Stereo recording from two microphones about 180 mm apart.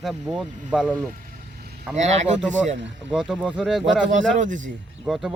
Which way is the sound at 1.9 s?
40° right (ahead or behind).